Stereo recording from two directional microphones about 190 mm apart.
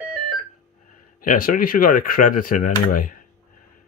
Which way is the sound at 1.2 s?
50° left (ahead or behind).